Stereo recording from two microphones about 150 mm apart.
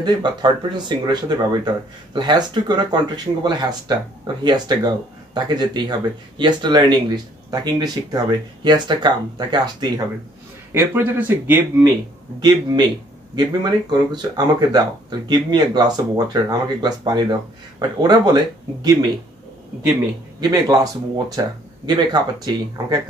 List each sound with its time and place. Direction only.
0.0 s speech: 30° right (ahead or behind)
10.7 s speech: 15° right (ahead or behind)
12.4 s speech: 30° right (ahead or behind)
20.3 s speech: 25° right (ahead or behind)